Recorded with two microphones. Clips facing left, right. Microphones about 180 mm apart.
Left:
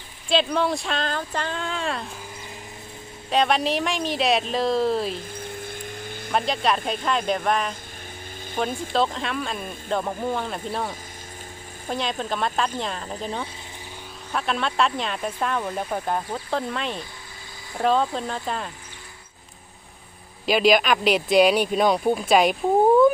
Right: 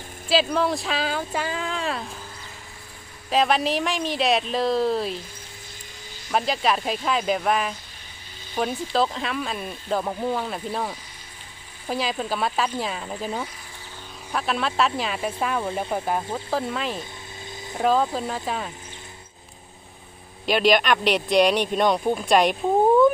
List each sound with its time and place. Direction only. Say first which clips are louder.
0.3 s speech: even; centre (ahead or behind)
3.2 s speech: even; centre (ahead or behind)
5.6 s a sound: left 10 dB; 55° left (ahead or behind)
6.3 s speech: even; centre (ahead or behind)
20.5 s speech: left 1 dB; centre (ahead or behind)